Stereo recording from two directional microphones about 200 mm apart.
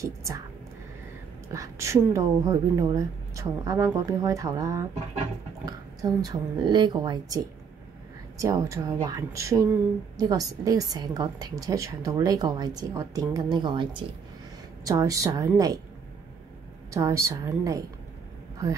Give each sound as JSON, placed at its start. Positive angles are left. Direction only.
{"t": 0.0, "sound": "a woman's voice", "side_deg": -15}
{"t": 1.5, "sound": "a woman's voice", "side_deg": -15}
{"t": 16.9, "sound": "a woman's voice", "side_deg": -15}